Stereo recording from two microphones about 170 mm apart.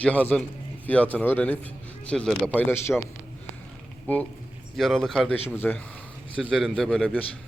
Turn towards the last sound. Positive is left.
turn(degrees=0)  # may be behind; listen again after turning